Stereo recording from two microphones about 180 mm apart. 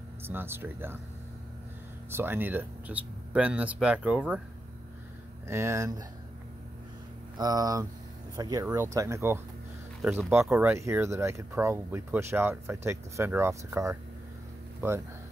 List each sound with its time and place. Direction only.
0.2 s speech: 10° right (ahead or behind)
2.0 s speech: 10° right (ahead or behind)
5.5 s speech: 15° right (ahead or behind)
7.3 s speech: 20° right (ahead or behind)